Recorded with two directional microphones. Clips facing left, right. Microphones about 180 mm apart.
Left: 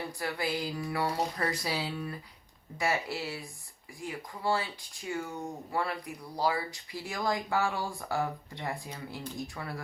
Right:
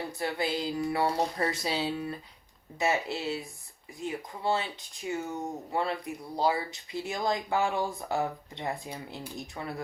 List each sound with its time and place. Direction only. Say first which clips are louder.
0.2 s speech: right 3 dB; 25° right (ahead or behind)